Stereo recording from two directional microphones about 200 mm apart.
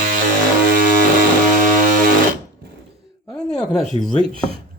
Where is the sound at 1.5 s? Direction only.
40° right (ahead or behind).